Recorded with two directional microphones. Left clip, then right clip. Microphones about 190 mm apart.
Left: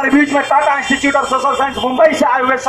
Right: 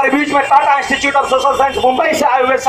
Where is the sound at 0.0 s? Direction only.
40° left (ahead or behind).